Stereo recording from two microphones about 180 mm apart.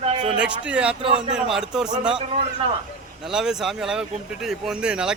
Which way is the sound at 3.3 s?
5° right (ahead or behind).